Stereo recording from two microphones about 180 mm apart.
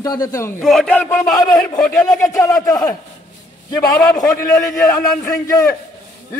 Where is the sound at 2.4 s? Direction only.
20° left (ahead or behind).